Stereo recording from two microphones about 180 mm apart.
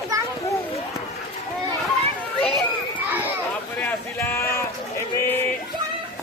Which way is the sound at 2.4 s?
5° left (ahead or behind).